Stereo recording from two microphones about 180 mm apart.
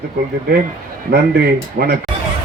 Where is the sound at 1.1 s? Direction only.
60° right (ahead or behind).